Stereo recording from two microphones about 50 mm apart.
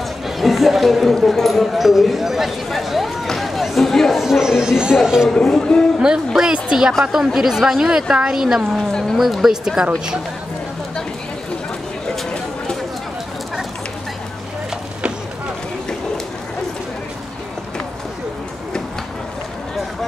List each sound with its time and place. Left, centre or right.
0.4 s speech: centre
3.3 s a sound: centre
4.2 s a woman's voice: centre
5.3 s speech: centre
5.9 s a woman's voice: centre